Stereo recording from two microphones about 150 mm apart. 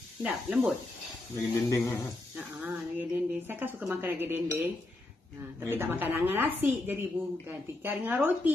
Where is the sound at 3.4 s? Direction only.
10° right (ahead or behind).